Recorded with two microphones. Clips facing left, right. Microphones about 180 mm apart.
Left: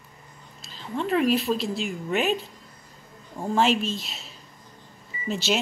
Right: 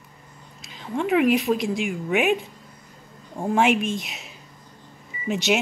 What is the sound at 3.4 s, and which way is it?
Speech, 10° right (ahead or behind).